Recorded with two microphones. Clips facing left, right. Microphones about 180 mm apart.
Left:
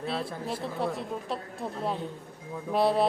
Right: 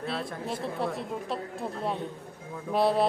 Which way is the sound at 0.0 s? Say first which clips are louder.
Left 1 dB; centre (ahead or behind).